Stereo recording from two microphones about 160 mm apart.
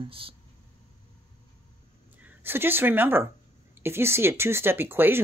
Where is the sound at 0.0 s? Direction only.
35° right (ahead or behind).